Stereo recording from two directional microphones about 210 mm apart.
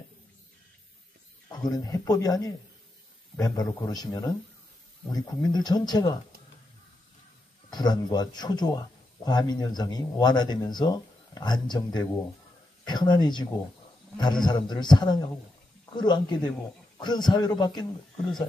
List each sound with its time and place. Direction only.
1.7 s a man's voice: 15° left (ahead or behind)
7.7 s speech: 20° left (ahead or behind)